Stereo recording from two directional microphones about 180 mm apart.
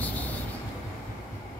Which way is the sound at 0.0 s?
10° left (ahead or behind).